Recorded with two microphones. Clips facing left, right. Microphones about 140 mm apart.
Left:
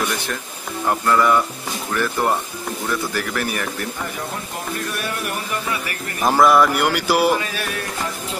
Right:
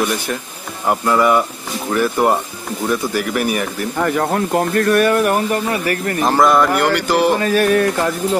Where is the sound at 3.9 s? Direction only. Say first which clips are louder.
Right 11 dB; 70° right (ahead or behind); by 6.1 s 45° right (ahead or behind).